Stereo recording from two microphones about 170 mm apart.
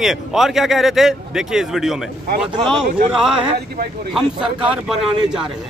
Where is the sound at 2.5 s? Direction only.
25° right (ahead or behind).